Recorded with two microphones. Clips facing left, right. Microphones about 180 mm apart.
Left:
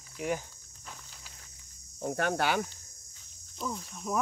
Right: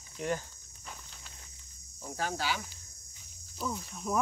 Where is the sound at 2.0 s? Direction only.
60° left (ahead or behind).